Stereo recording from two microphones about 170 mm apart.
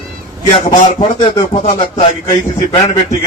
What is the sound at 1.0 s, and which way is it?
A man's voice, 30° left (ahead or behind).